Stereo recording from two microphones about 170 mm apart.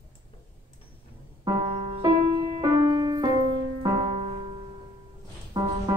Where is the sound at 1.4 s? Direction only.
20° right (ahead or behind).